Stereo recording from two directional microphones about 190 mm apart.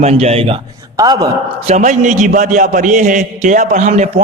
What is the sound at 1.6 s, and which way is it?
A man's voice, 40° right (ahead or behind).